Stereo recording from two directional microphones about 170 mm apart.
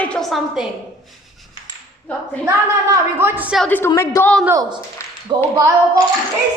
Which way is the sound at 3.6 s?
10° left (ahead or behind).